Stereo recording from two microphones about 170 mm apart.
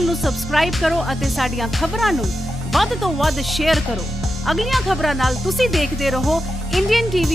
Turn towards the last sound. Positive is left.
turn(degrees=0)  # may be behind; listen again after turning